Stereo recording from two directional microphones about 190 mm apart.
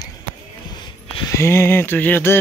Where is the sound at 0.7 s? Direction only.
20° left (ahead or behind).